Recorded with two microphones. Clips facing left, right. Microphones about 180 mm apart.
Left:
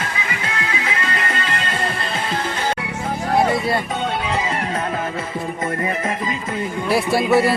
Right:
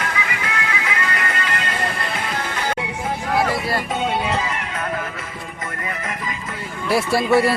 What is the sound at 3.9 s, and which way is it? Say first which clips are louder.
Speech: right 1 dB; 5° right (ahead or behind).